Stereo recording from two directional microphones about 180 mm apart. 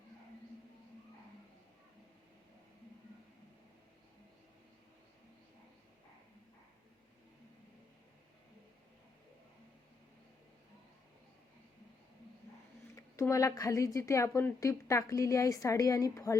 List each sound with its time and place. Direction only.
13.1 s a woman's voice: 15° left (ahead or behind)